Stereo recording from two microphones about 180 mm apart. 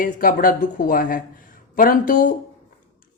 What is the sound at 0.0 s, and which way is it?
A woman's voice, 50° left (ahead or behind).